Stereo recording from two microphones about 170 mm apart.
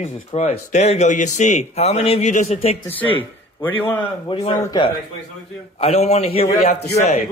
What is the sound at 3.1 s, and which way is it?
Speech, 10° left (ahead or behind).